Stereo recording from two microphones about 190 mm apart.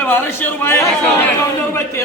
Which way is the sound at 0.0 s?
10° left (ahead or behind).